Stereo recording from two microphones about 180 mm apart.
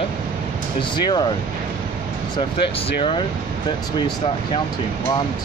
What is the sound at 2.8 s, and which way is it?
Speech, 30° left (ahead or behind).